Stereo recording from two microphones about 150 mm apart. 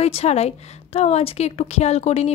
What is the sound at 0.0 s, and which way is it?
A woman's voice, 45° left (ahead or behind).